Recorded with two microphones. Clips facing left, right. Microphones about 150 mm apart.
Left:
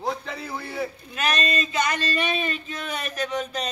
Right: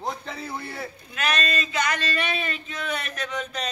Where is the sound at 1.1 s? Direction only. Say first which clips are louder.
Even; 35° left (ahead or behind).